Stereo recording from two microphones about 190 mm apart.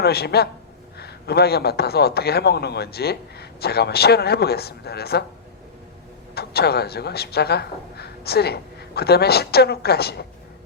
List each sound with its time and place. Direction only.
0.0 s a man's voice: 55° left (ahead or behind)
6.3 s a man's voice: 55° left (ahead or behind)